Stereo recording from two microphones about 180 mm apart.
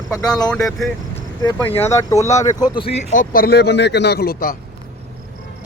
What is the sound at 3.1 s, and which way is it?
Speech, 50° left (ahead or behind).